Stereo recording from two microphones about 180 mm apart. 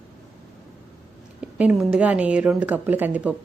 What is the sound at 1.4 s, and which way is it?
A woman's voice, 5° right (ahead or behind).